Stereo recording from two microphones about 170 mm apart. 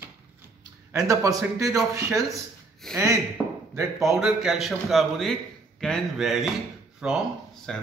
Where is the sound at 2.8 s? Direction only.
5° left (ahead or behind).